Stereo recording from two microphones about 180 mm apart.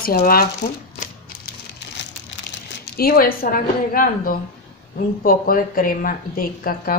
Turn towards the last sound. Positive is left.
turn(degrees=50)  # may be behind; listen again after turning